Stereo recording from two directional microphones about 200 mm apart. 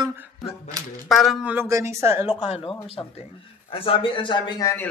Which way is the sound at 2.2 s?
30° left (ahead or behind).